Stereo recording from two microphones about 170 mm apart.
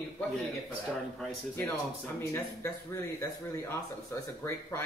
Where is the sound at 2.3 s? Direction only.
15° left (ahead or behind).